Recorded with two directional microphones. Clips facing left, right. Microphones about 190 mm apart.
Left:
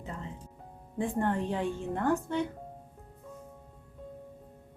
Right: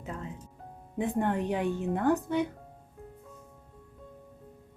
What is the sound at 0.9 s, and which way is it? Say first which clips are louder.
Speech: right 1 dB; 15° right (ahead or behind).